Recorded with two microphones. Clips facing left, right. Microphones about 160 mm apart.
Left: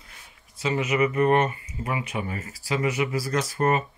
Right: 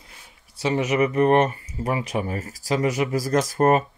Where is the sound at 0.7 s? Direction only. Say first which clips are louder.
Right 2 dB; 40° right (ahead or behind).